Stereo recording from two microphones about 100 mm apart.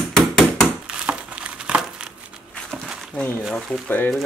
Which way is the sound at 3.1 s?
15° left (ahead or behind).